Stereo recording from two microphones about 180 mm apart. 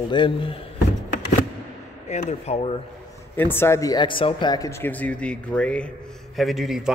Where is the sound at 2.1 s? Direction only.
35° left (ahead or behind).